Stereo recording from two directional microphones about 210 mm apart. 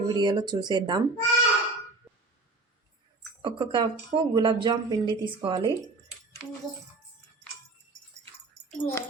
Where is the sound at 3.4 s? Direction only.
25° right (ahead or behind).